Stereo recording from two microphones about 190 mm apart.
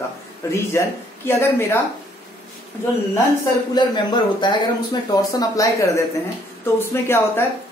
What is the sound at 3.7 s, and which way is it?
Speech, 25° left (ahead or behind).